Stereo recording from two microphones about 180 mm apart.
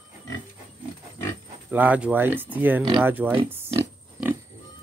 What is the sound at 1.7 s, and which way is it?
Speech, 10° right (ahead or behind).